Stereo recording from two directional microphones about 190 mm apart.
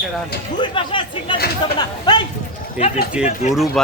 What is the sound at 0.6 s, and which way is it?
Speech, 25° left (ahead or behind).